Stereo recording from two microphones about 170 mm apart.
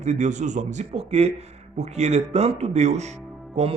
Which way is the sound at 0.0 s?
45° right (ahead or behind).